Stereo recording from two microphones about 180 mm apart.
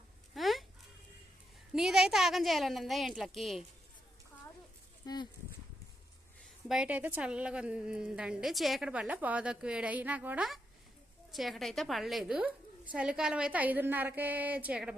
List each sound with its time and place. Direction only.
0.3 s a sound: centre (ahead or behind)
1.7 s a woman's voice: 5° right (ahead or behind)
5.0 s speech: 25° left (ahead or behind)
6.7 s a woman's voice: 5° right (ahead or behind)